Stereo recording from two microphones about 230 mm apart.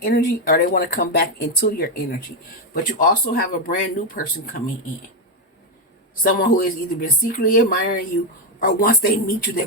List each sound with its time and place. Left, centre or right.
0.0 s speech: left
6.2 s speech: left